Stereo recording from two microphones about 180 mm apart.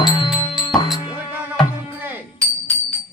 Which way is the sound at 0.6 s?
25° left (ahead or behind).